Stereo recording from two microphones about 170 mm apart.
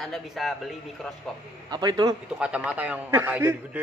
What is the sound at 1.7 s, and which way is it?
Speech, 25° right (ahead or behind).